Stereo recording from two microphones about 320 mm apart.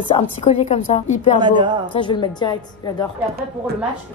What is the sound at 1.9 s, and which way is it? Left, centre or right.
Speech, centre.